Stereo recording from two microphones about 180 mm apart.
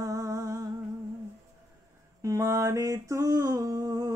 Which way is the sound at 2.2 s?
15° right (ahead or behind).